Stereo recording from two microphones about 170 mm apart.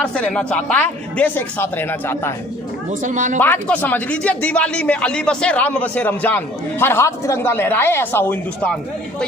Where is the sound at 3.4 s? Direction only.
10° left (ahead or behind).